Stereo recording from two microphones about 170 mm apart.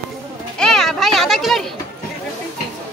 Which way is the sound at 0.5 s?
5° left (ahead or behind).